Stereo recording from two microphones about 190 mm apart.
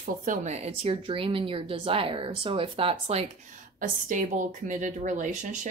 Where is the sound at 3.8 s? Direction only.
45° right (ahead or behind).